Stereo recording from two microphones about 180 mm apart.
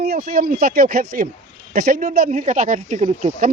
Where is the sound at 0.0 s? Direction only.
55° right (ahead or behind).